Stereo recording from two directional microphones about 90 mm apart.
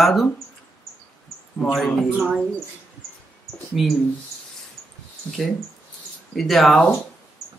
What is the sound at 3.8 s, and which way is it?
Speech, 5° right (ahead or behind).